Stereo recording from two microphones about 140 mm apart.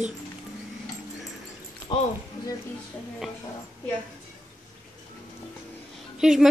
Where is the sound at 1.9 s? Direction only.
35° left (ahead or behind).